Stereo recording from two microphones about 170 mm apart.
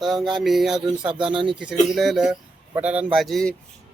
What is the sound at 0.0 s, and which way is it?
Speech, centre (ahead or behind).